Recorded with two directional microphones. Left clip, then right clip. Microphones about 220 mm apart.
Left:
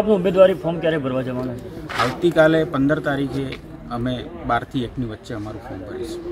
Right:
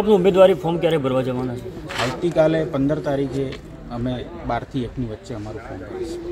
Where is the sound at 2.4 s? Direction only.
5° left (ahead or behind).